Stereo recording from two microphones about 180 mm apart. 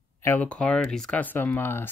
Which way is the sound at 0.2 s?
10° left (ahead or behind).